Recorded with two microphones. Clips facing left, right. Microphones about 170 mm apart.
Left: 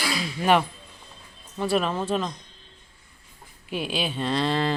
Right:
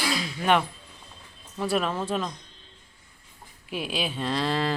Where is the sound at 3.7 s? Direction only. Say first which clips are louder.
Left 2 dB; centre (ahead or behind).